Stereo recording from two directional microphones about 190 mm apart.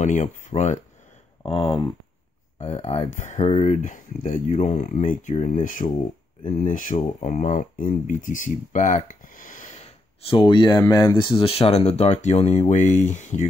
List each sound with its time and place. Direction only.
0.0 s speech: 40° left (ahead or behind)
1.4 s speech: 30° left (ahead or behind)